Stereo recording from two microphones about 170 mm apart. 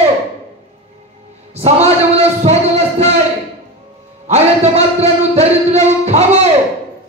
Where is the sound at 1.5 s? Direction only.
35° right (ahead or behind).